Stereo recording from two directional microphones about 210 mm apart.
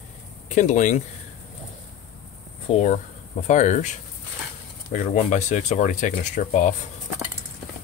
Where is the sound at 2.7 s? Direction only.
35° left (ahead or behind).